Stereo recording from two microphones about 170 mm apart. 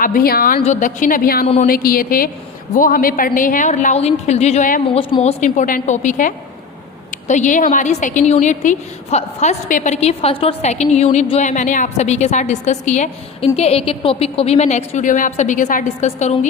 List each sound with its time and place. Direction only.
0.0 s a woman's voice: 60° left (ahead or behind)
0.6 s a woman's voice: 45° left (ahead or behind)
4.9 s a woman's voice: 30° left (ahead or behind)
5.4 s a woman's voice: 50° left (ahead or behind)